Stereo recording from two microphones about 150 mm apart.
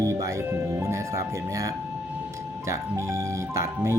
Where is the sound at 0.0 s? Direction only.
20° right (ahead or behind).